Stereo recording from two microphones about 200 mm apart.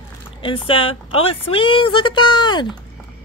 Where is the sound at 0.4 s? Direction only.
25° left (ahead or behind).